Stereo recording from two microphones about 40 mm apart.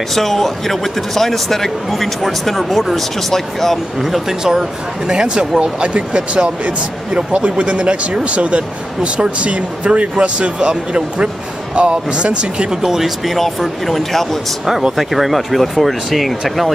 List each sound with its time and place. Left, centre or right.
0.1 s speech: centre
4.0 s speech: centre; by 12.7 s right
12.8 s speech: centre
14.7 s speech: centre
15.0 s speech: centre